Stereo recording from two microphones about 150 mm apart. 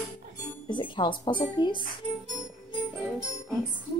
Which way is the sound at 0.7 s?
30° left (ahead or behind).